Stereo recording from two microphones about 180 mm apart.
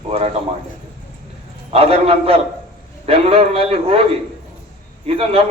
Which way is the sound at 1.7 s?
35° right (ahead or behind).